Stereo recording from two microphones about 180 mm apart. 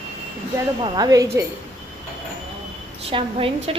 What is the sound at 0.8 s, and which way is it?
Speech, 20° right (ahead or behind).